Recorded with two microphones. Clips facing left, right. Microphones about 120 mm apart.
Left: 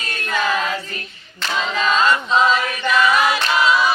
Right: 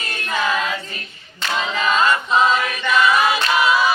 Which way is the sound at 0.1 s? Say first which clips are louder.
Left 1 dB; 15° right (ahead or behind).